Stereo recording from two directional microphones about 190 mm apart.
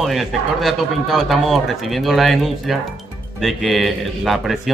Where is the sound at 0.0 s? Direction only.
Centre (ahead or behind).